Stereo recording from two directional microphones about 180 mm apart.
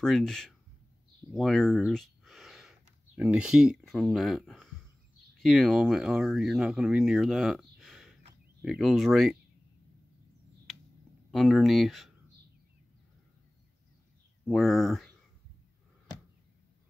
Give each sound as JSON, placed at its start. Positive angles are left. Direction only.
{"t": 0.0, "sound": "speech", "side_deg": 5}
{"t": 1.8, "sound": "a sound", "side_deg": 0}
{"t": 5.4, "sound": "speech", "side_deg": 0}
{"t": 11.3, "sound": "speech", "side_deg": 0}
{"t": 14.4, "sound": "speech", "side_deg": 0}